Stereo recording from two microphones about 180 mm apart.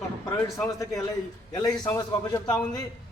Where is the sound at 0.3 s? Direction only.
5° left (ahead or behind).